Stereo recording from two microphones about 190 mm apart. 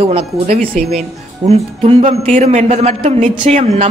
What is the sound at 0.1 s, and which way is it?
A man's voice, 35° right (ahead or behind).